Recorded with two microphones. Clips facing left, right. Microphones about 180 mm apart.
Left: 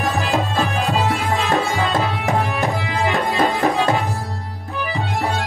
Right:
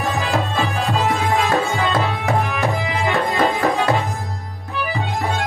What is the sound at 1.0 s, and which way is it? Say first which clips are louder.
Music: right 2 dB; 15° right (ahead or behind).